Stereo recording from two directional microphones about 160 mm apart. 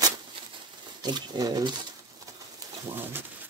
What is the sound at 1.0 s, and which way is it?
Speech, 25° right (ahead or behind).